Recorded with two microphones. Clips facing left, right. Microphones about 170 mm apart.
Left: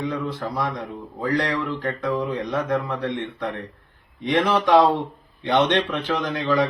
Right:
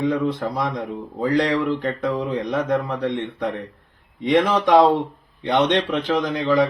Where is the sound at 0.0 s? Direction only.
20° right (ahead or behind).